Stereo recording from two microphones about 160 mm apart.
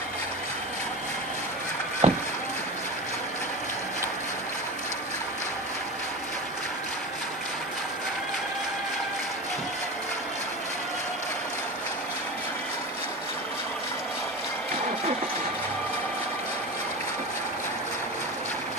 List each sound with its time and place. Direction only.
2.0 s boat: 45° right (ahead or behind)